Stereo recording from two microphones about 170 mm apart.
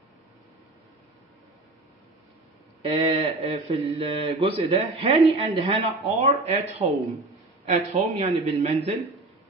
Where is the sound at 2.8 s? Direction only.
35° right (ahead or behind).